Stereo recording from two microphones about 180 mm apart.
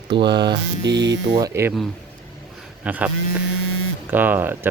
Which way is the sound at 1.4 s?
15° right (ahead or behind).